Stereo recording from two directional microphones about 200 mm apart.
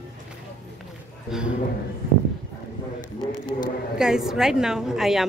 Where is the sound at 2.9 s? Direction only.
45° left (ahead or behind).